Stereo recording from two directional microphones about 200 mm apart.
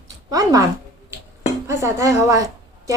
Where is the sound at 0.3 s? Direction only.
15° right (ahead or behind).